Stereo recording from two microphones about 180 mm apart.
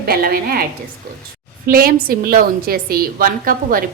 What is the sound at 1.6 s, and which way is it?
A woman's voice, 50° right (ahead or behind).